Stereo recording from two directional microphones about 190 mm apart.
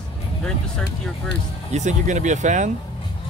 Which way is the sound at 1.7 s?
40° right (ahead or behind).